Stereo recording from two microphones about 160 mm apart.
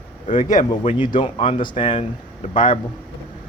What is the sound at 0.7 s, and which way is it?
Speech, 35° left (ahead or behind).